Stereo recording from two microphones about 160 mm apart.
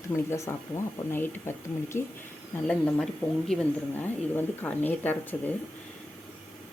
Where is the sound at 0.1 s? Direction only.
20° left (ahead or behind).